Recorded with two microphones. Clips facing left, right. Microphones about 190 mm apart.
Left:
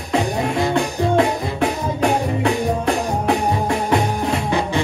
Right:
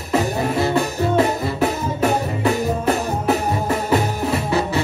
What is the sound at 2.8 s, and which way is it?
Music, 5° right (ahead or behind).